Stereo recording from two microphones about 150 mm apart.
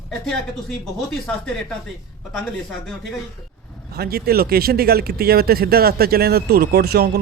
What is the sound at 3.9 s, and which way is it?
Speech, 90° right.